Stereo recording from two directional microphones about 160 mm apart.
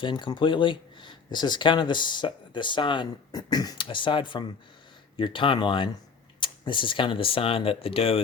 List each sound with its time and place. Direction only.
0.0 s speech: 30° left (ahead or behind)